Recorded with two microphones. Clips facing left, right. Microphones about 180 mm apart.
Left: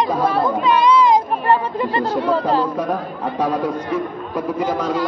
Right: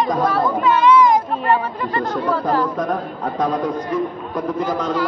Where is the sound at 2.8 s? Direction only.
10° left (ahead or behind).